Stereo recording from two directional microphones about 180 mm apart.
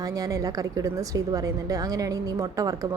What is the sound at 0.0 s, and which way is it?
A woman's voice, 20° right (ahead or behind).